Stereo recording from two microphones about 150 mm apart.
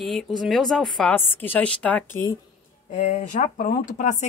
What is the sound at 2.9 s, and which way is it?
Speech, 55° left (ahead or behind).